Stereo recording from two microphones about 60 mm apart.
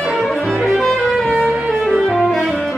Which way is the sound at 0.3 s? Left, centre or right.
Centre.